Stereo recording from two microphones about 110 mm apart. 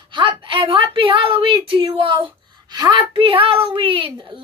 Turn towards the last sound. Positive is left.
turn(degrees=-55)  # may be behind; listen again after turning